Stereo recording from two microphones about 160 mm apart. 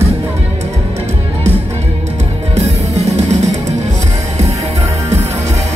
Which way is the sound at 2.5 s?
45° right (ahead or behind).